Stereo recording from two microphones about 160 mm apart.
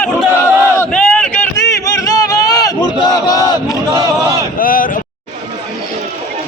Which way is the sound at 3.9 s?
20° right (ahead or behind).